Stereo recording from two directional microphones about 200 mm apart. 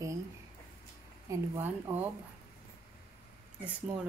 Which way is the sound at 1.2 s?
10° right (ahead or behind).